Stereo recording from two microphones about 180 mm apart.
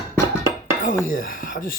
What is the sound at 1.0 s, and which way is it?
Speech, 50° left (ahead or behind).